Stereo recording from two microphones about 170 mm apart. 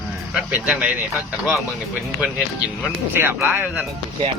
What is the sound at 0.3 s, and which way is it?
Speech, 10° right (ahead or behind).